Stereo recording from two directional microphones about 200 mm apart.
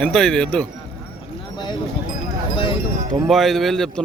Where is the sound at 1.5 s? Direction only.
20° left (ahead or behind).